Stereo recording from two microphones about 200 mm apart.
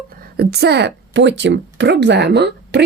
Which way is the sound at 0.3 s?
55° right (ahead or behind).